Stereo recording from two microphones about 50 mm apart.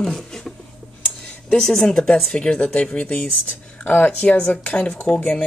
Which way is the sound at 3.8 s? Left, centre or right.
Left.